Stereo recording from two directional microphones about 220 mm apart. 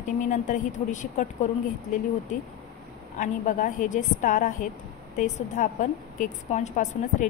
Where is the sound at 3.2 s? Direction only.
35° left (ahead or behind).